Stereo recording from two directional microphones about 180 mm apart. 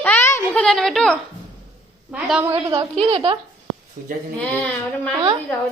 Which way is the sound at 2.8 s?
30° right (ahead or behind).